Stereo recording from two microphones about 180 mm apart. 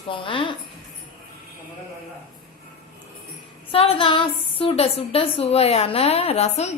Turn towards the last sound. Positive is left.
turn(degrees=35)  # may be behind; listen again after turning